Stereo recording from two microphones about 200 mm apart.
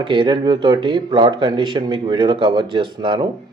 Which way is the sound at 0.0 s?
25° right (ahead or behind).